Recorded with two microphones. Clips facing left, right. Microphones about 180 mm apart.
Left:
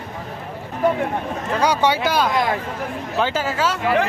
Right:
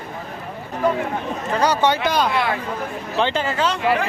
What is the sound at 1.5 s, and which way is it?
Speech, 10° left (ahead or behind).